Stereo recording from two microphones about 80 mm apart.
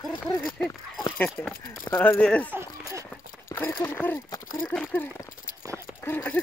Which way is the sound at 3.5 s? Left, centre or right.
Left.